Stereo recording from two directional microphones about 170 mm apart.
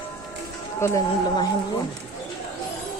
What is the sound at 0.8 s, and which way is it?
Speech, 20° left (ahead or behind).